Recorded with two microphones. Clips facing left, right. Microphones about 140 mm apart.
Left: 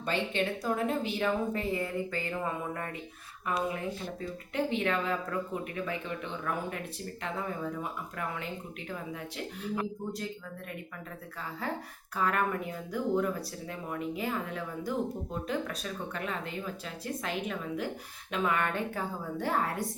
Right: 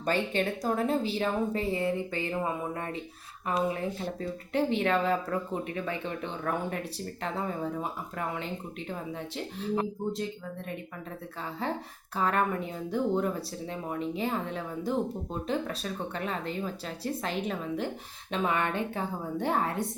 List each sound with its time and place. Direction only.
0.0 s speech: 40° right (ahead or behind)
9.6 s speech: 25° right (ahead or behind)
11.6 s speech: 25° right (ahead or behind)